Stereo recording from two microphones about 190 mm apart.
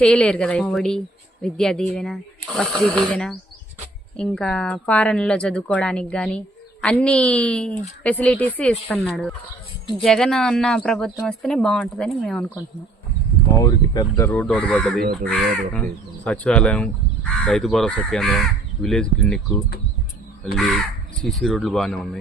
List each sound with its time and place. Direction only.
0.0 s speech: 5° left (ahead or behind)
13.6 s speech: 20° left (ahead or behind)
14.3 s speech: 5° left (ahead or behind)
15.0 s speech: 55° right (ahead or behind)
16.2 s speech: 5° left (ahead or behind)